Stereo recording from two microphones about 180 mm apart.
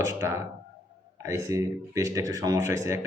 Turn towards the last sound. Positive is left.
turn(degrees=-15)  # may be behind; listen again after turning